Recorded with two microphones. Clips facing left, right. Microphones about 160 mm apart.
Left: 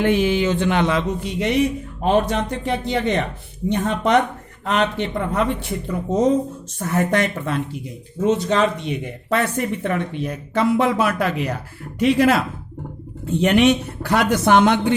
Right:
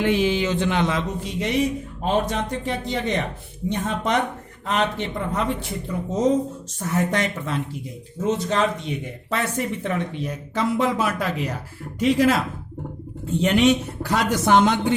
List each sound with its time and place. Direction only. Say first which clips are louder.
0.0 s speech: left 3 dB; 50° left (ahead or behind)
8.2 s speech: left 4 dB; 70° left (ahead or behind)
9.3 s speech: left 4 dB; 60° left (ahead or behind)
13.4 s speech: left 2 dB; 65° left (ahead or behind)